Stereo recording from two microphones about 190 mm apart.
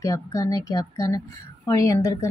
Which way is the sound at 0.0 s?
15° left (ahead or behind).